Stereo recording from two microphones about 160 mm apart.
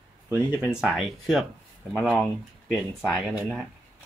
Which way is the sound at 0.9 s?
Centre (ahead or behind).